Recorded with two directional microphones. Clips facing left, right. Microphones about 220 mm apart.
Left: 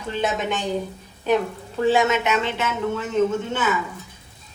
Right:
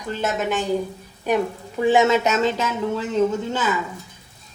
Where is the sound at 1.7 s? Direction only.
15° right (ahead or behind).